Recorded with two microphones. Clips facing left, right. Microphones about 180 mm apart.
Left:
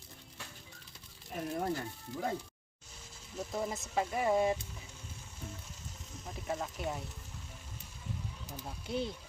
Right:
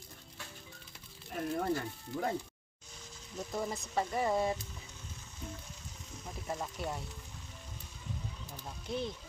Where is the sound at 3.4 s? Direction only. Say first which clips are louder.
Even; 5° left (ahead or behind).